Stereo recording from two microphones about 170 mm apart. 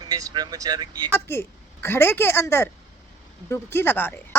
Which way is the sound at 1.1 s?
15° left (ahead or behind).